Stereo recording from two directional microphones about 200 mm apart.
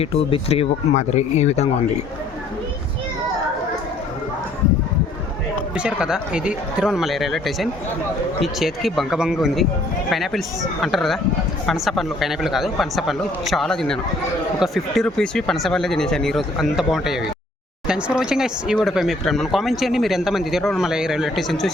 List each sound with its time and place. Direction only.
0.0 s speech: 30° left (ahead or behind)
5.7 s speech: 5° right (ahead or behind)